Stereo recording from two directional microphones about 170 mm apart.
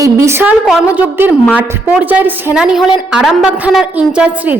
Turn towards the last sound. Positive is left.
turn(degrees=-10)  # may be behind; listen again after turning